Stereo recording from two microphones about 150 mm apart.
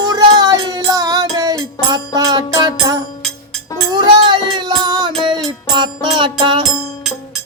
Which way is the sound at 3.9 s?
30° right (ahead or behind).